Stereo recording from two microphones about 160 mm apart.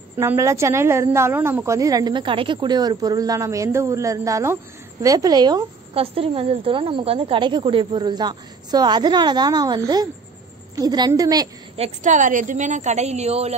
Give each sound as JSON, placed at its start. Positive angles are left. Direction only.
{"t": 0.2, "sound": "a woman's voice", "side_deg": -15}
{"t": 5.9, "sound": "a woman's voice", "side_deg": -35}
{"t": 11.7, "sound": "a woman's voice", "side_deg": -45}